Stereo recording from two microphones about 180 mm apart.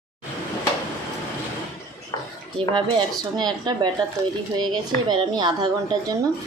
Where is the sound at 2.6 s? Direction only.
30° right (ahead or behind).